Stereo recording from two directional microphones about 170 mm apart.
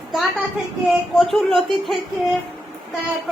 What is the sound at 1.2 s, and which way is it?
Speech, centre (ahead or behind).